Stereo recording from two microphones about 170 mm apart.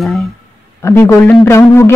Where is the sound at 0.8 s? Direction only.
15° left (ahead or behind).